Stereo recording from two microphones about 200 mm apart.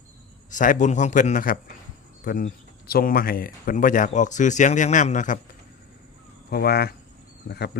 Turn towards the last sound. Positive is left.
turn(degrees=55)  # may be behind; listen again after turning